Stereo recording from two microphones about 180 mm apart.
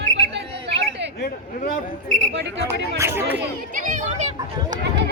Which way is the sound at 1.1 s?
55° left (ahead or behind).